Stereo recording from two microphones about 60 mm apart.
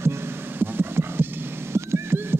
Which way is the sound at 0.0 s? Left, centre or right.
Right.